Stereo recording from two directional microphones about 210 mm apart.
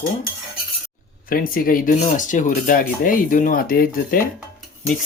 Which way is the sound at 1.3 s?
40° left (ahead or behind).